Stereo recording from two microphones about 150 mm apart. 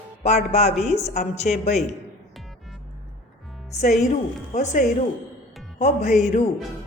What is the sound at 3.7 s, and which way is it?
A woman's voice, 50° left (ahead or behind).